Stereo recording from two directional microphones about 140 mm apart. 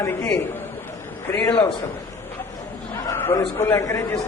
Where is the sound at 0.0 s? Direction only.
20° left (ahead or behind).